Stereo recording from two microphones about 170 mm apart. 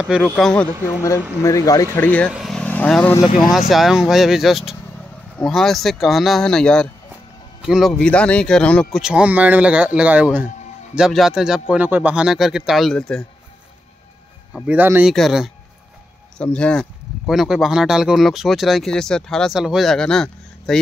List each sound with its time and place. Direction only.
0.0 s speech: 5° right (ahead or behind)
1.4 s speech: 20° left (ahead or behind)
14.5 s speech: 10° right (ahead or behind)